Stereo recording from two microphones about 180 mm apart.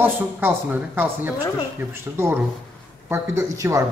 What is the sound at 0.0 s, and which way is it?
Speech, 10° right (ahead or behind).